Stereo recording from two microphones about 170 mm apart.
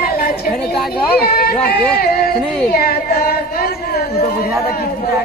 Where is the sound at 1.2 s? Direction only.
65° left (ahead or behind).